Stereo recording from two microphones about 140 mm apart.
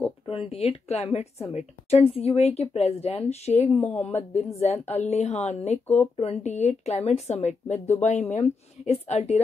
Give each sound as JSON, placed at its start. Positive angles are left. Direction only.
{"t": 0.3, "sound": "speech", "side_deg": 45}
{"t": 3.7, "sound": "speech", "side_deg": 15}
{"t": 4.2, "sound": "speech", "side_deg": 50}